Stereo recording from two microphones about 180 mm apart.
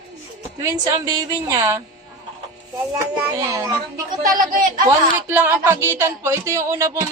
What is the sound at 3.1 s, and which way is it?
Speech, 15° right (ahead or behind).